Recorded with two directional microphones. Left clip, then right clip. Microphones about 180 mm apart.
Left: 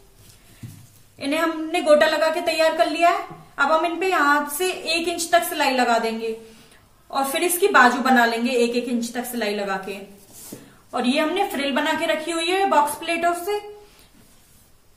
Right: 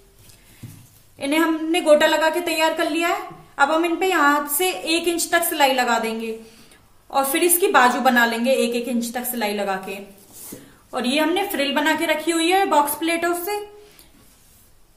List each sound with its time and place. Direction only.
1.1 s a woman's voice: 35° right (ahead or behind)
10.9 s a woman's voice: 40° right (ahead or behind)